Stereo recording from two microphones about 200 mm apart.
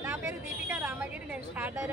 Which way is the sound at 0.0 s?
15° right (ahead or behind).